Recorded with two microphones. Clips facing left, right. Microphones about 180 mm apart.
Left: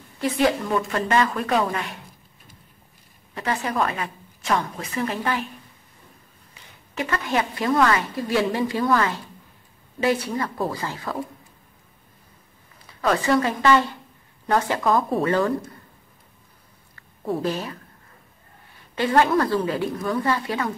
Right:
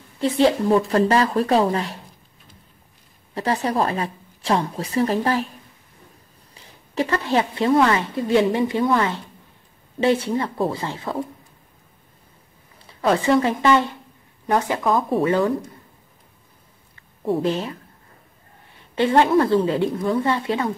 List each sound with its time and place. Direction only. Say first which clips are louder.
0.2 s a woman's voice: right 4 dB; 25° right (ahead or behind)
3.3 s a woman's voice: right 3 dB; 35° right (ahead or behind)
6.5 s a woman's voice: right 6 dB; 35° right (ahead or behind)
12.7 s a woman's voice: right 3 dB; 25° right (ahead or behind)
17.4 s a woman's voice: right 4 dB; 25° right (ahead or behind)
18.9 s a woman's voice: right 3 dB; 25° right (ahead or behind)